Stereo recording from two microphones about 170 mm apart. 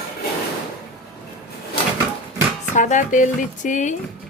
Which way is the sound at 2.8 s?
45° left (ahead or behind).